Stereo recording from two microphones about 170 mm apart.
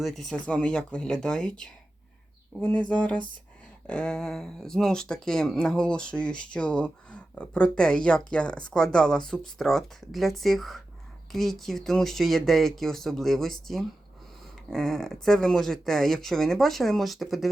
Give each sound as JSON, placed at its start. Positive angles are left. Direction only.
{"t": 0.0, "sound": "speech", "side_deg": 0}